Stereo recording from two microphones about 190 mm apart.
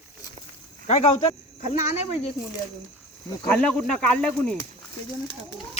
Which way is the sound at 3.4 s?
10° left (ahead or behind).